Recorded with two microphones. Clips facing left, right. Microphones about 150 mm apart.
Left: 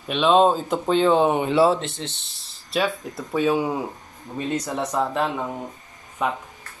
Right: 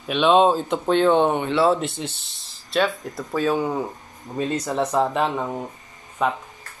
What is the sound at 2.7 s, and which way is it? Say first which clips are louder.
Speech: right 2 dB; 5° left (ahead or behind).